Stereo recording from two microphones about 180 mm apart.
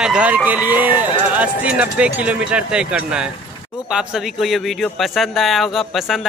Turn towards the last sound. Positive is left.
turn(degrees=0)  # may be behind; listen again after turning